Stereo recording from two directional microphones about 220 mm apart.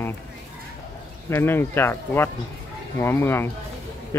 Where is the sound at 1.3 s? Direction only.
10° left (ahead or behind).